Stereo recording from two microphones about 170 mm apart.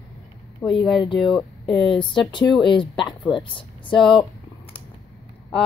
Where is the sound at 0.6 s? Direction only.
20° left (ahead or behind).